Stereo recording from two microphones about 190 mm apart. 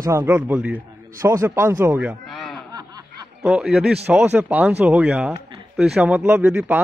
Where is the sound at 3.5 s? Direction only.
Centre (ahead or behind).